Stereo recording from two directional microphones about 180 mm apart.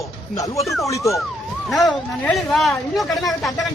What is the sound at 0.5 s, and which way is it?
Speech, centre (ahead or behind).